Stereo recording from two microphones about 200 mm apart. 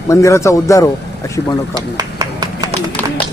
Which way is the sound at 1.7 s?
20° right (ahead or behind).